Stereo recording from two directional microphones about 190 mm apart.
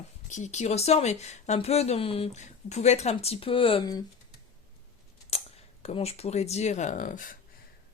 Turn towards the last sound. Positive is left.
turn(degrees=45)  # may be behind; listen again after turning